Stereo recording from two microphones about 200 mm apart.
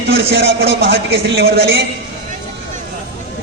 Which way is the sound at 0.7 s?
55° right (ahead or behind).